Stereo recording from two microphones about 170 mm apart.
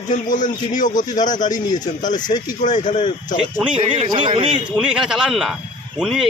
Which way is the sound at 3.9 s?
30° right (ahead or behind).